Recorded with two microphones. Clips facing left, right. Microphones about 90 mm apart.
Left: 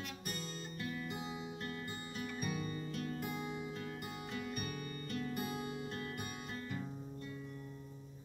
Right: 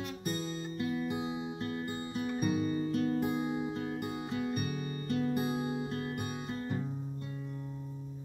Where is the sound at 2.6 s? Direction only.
40° right (ahead or behind).